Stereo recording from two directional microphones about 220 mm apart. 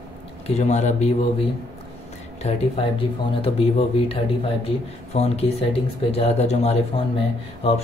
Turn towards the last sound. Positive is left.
turn(degrees=25)  # may be behind; listen again after turning